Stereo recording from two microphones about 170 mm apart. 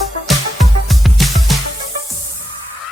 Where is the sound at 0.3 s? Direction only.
Centre (ahead or behind).